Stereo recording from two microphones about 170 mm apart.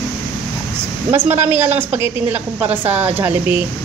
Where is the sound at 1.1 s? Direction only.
10° right (ahead or behind).